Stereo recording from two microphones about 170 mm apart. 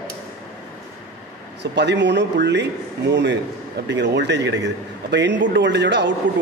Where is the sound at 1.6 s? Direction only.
90° right.